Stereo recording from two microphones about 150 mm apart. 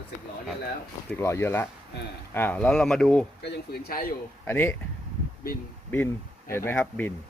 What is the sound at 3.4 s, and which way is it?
Speech, 90° left.